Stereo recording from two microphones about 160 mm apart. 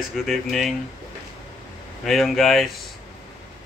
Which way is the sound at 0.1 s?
Centre (ahead or behind).